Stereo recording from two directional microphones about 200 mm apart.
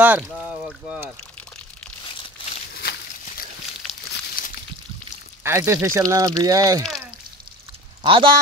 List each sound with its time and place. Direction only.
0.0 s speech: 10° right (ahead or behind)
0.3 s boat: centre (ahead or behind)
2.7 s walk: 50° left (ahead or behind)
4.4 s a sound: 45° left (ahead or behind)
5.4 s speech: 15° right (ahead or behind)
8.0 s speech: 25° right (ahead or behind)